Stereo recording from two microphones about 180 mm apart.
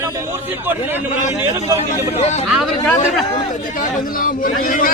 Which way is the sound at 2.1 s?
35° left (ahead or behind).